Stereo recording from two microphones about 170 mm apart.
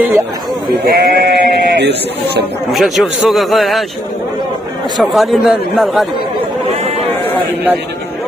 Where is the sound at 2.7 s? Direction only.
Centre (ahead or behind).